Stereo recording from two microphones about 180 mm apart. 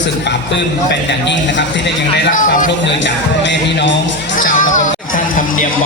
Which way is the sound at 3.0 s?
80° left.